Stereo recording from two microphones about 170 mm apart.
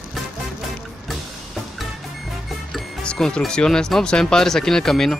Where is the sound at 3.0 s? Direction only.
5° left (ahead or behind).